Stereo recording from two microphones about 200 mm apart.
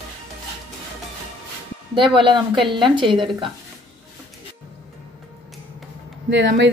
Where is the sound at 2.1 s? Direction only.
25° right (ahead or behind).